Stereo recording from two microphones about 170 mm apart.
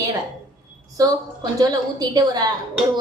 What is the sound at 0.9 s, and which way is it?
A woman's voice, 20° right (ahead or behind).